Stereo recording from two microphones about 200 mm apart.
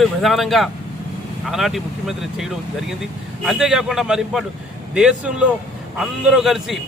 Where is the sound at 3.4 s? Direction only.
Centre (ahead or behind).